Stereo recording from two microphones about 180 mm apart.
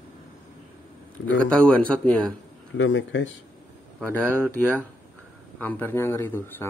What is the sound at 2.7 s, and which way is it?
Speech, 90° left.